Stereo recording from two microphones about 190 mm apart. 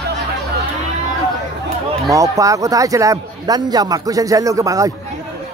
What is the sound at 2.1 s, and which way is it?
A man's voice, 15° right (ahead or behind).